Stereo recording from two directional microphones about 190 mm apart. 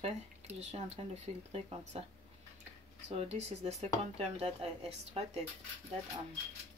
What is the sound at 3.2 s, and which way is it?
Speech, 35° right (ahead or behind).